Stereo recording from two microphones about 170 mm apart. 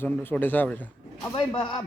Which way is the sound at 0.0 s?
10° left (ahead or behind).